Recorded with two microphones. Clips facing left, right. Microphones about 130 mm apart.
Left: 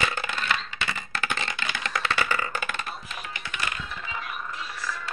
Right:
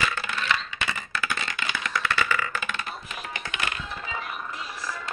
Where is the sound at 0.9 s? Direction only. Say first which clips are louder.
Right 1 dB; 25° left (ahead or behind).